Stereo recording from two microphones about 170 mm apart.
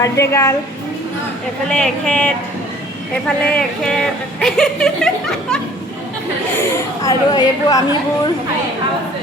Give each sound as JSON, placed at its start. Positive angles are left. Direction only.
{"t": 0.0, "sound": "a woman's voice", "side_deg": 15}
{"t": 1.7, "sound": "speech", "side_deg": 5}
{"t": 6.6, "sound": "speech", "side_deg": 20}